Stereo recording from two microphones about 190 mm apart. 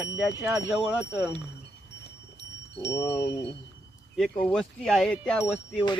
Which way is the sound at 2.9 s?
15° left (ahead or behind).